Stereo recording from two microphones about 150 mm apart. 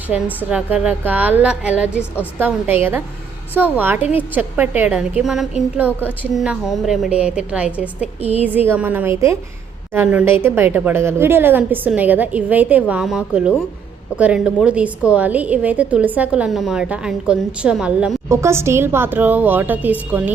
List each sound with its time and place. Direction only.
0.1 s a woman's voice: 5° right (ahead or behind)
18.3 s a woman's voice: 20° right (ahead or behind)